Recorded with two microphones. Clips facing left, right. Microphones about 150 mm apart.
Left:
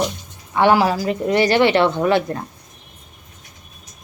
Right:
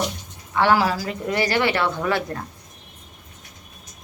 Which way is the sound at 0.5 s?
20° left (ahead or behind).